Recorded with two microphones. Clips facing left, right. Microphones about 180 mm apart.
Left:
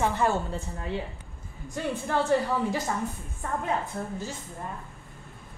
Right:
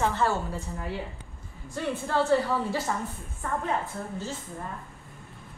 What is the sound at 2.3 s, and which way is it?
Speech, 15° left (ahead or behind).